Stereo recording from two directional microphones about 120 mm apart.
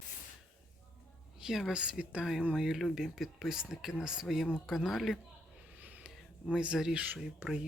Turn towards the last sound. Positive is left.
turn(degrees=-5)  # may be behind; listen again after turning